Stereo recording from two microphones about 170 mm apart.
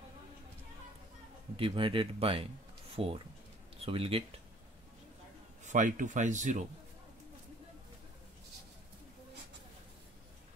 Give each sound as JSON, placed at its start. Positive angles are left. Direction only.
{"t": 1.6, "sound": "speech", "side_deg": -30}
{"t": 5.7, "sound": "speech", "side_deg": -50}